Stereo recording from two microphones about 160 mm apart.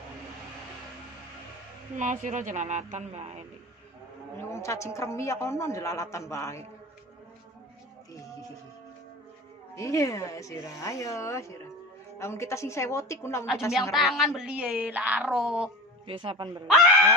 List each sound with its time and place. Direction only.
2.0 s speech: 50° right (ahead or behind)
4.4 s a man's voice: 15° left (ahead or behind)
9.8 s a man's voice: 20° left (ahead or behind)
13.9 s speech: centre (ahead or behind)
16.1 s speech: 35° right (ahead or behind)